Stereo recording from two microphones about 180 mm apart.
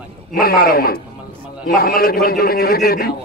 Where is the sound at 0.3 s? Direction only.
55° left (ahead or behind).